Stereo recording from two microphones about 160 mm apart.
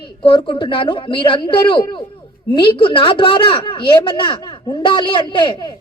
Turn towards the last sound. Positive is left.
turn(degrees=30)  # may be behind; listen again after turning